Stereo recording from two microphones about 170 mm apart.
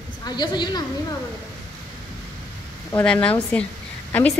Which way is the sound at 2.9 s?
10° left (ahead or behind).